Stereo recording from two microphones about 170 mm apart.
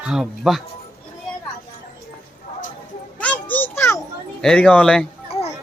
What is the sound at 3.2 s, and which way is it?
Children playing, 10° left (ahead or behind).